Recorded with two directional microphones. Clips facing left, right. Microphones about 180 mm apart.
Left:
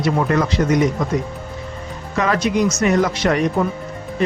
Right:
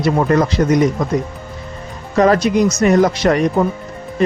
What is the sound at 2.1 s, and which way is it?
Speech, 35° right (ahead or behind).